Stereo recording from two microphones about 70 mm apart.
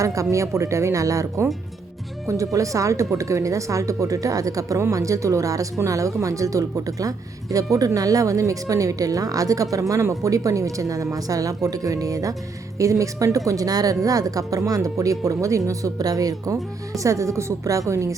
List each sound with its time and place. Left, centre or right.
0.0 s speech: right